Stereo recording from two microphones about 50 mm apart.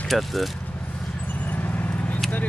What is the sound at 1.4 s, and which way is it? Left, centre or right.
Vehicle, left.